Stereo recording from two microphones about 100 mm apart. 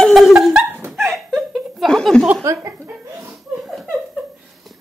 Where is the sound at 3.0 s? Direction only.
30° right (ahead or behind).